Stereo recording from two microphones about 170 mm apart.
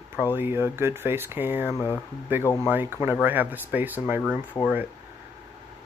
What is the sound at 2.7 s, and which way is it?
Speech, 10° right (ahead or behind).